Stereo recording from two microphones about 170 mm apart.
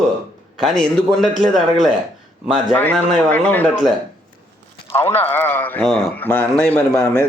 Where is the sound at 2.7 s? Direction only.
5° left (ahead or behind).